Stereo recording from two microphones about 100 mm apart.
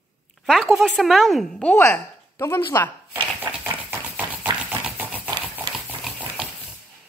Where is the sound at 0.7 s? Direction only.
Centre (ahead or behind).